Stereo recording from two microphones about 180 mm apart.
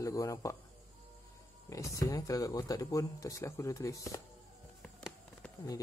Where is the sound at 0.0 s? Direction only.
20° left (ahead or behind).